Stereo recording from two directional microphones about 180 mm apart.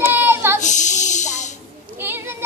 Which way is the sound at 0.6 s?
40° left (ahead or behind).